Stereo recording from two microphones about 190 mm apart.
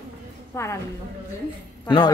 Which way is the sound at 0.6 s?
15° left (ahead or behind).